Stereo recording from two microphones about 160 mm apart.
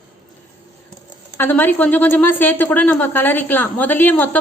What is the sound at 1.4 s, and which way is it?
A woman's voice, 10° left (ahead or behind).